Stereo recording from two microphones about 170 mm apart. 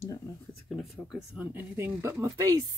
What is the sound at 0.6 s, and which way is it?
Speech, centre (ahead or behind).